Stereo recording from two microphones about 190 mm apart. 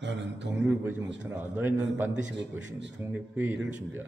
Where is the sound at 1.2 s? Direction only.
10° right (ahead or behind).